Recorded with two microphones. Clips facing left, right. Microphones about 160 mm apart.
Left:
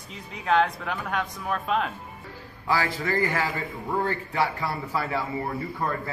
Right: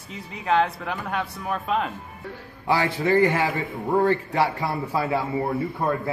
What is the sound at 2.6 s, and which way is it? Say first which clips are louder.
A man's voice: right 4 dB; 25° right (ahead or behind).